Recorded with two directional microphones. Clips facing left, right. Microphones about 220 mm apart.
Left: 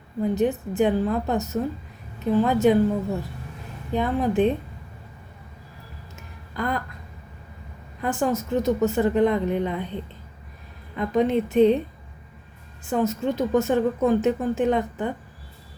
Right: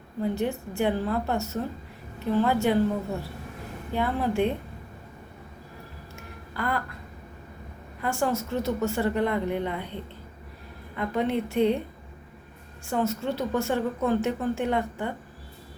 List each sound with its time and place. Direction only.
0.2 s a woman's voice: 15° left (ahead or behind)
3.9 s a woman's voice: 15° left (ahead or behind)
6.1 s a sound: 20° left (ahead or behind)
8.0 s a woman's voice: 15° left (ahead or behind)
10.9 s a woman's voice: 15° left (ahead or behind)
12.8 s a woman's voice: 15° left (ahead or behind)